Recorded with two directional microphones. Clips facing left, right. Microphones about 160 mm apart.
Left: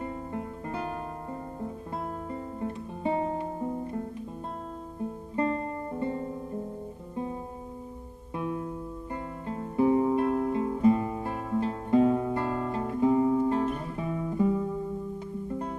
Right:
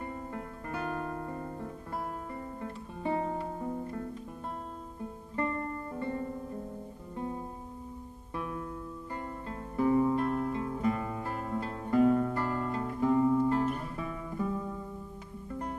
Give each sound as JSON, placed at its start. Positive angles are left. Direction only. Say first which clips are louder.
{"t": 0.0, "sound": "guitar", "louder": "left 4 dB", "side_deg": 20}
{"t": 2.3, "sound": "music", "louder": "left 5 dB", "side_deg": 20}
{"t": 5.3, "sound": "music", "louder": "left 4 dB", "side_deg": 20}
{"t": 8.4, "sound": "music", "louder": "left 5 dB", "side_deg": 25}
{"t": 12.4, "sound": "guitar", "louder": "left 3 dB", "side_deg": 20}